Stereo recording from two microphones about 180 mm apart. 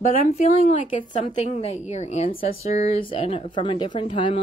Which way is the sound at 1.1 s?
35° left (ahead or behind).